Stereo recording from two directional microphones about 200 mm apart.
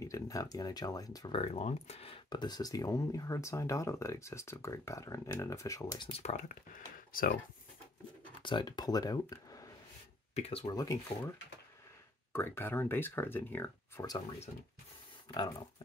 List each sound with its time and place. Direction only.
0.0 s speech: 15° left (ahead or behind); by 7.3 s 45° left (ahead or behind)
8.4 s speech: 25° left (ahead or behind)
10.3 s speech: 30° left (ahead or behind)
10.7 s speech: 15° left (ahead or behind)
12.3 s speech: 10° left (ahead or behind)